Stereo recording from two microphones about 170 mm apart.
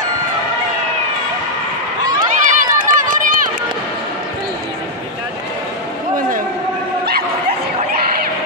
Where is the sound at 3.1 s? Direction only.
55° right (ahead or behind).